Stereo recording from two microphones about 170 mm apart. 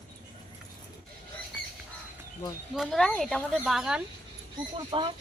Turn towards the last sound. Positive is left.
turn(degrees=-30)  # may be behind; listen again after turning